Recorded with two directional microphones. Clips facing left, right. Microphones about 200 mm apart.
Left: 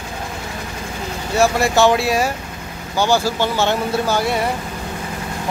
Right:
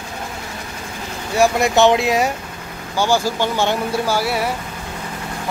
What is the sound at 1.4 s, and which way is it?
Speech, 20° right (ahead or behind).